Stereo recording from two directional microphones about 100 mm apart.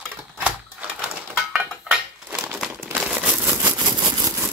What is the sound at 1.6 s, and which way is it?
Dishes, 15° right (ahead or behind).